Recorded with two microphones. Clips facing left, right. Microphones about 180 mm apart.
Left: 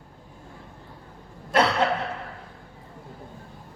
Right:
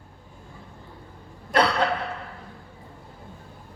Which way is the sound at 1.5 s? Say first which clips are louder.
Even; 25° left (ahead or behind).